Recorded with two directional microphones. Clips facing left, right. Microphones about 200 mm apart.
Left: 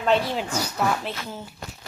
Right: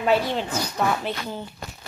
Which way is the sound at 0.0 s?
5° right (ahead or behind).